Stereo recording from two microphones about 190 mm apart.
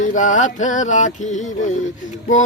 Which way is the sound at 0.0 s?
40° left (ahead or behind).